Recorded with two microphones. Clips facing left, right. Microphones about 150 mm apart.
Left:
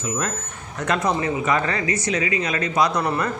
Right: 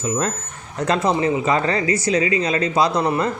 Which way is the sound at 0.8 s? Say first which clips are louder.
Right 3 dB; 30° right (ahead or behind).